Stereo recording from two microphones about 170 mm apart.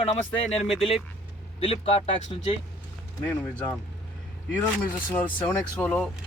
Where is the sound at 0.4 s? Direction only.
35° left (ahead or behind).